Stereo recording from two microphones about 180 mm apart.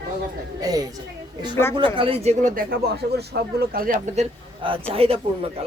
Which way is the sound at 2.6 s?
60° right (ahead or behind).